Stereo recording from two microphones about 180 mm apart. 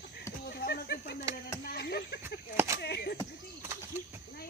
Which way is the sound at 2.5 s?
15° right (ahead or behind).